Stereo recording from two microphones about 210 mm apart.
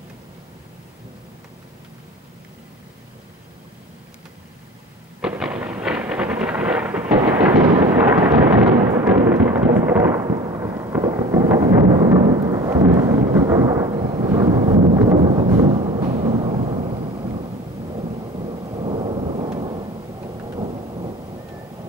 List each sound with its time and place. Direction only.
5.2 s thunder: 5° right (ahead or behind); by 21.1 s 25° right (ahead or behind)